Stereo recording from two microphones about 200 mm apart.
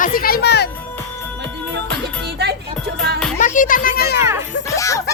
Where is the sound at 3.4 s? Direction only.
40° left (ahead or behind).